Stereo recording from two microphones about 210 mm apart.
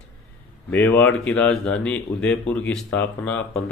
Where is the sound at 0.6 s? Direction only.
10° left (ahead or behind).